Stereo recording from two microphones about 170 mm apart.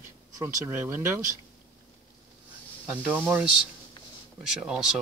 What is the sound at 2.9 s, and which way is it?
Speech, 10° right (ahead or behind).